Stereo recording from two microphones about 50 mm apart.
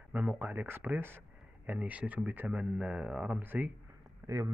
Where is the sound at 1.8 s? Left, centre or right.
Right.